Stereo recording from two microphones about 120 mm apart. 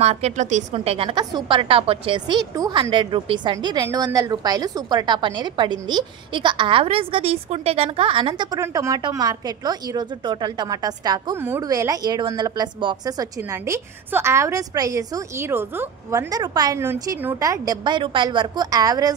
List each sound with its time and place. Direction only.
0.0 s a woman's voice: 65° right (ahead or behind)
0.7 s a woman's voice: 50° right (ahead or behind)
1.1 s a woman's voice: 40° right (ahead or behind)
8.5 s a woman's voice: 25° right (ahead or behind)